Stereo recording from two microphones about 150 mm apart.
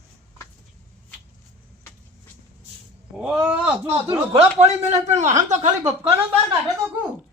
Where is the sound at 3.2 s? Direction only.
5° right (ahead or behind).